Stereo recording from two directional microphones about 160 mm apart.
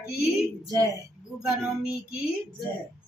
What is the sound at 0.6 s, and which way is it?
Speech, 20° right (ahead or behind).